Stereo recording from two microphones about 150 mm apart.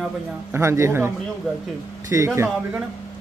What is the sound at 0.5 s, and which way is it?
Speech, 20° right (ahead or behind).